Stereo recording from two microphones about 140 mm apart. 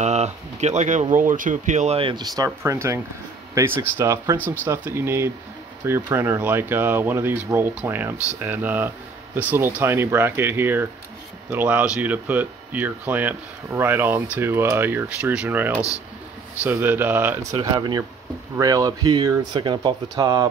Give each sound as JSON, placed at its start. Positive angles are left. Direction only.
{"t": 0.0, "sound": "a sound", "side_deg": -55}
{"t": 1.1, "sound": "speech", "side_deg": -70}
{"t": 2.0, "sound": "speech", "side_deg": -35}
{"t": 17.5, "sound": "speech", "side_deg": -30}